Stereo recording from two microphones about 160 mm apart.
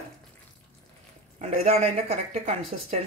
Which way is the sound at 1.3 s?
40° right (ahead or behind).